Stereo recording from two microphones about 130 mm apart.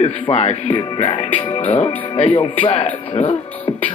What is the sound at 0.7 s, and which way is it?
Music, 40° left (ahead or behind).